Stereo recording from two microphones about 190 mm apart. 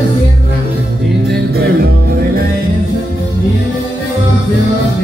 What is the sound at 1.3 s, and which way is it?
Music, 55° right (ahead or behind).